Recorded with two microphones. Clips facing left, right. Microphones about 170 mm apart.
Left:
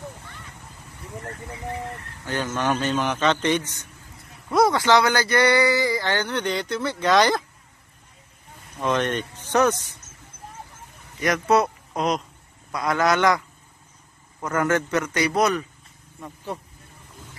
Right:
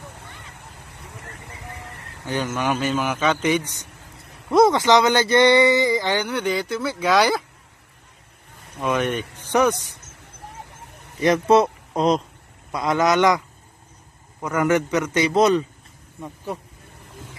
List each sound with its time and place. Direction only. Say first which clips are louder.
1.2 s vehicle: left 7 dB; 75° left (ahead or behind)
2.2 s speech: right 1 dB; 15° right (ahead or behind)
4.5 s speech: right 3 dB; 25° right (ahead or behind); by 7.4 s 5° right (ahead or behind)
8.8 s speech: right 1 dB; 5° right (ahead or behind)
11.1 s a man's voice: right 4 dB; 30° right (ahead or behind)
14.4 s speech: right 3 dB; 15° right (ahead or behind)